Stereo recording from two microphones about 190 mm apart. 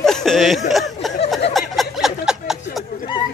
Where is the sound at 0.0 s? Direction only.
Centre (ahead or behind).